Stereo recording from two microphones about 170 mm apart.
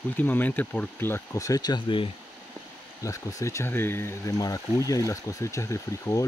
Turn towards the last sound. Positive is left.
turn(degrees=20)  # may be behind; listen again after turning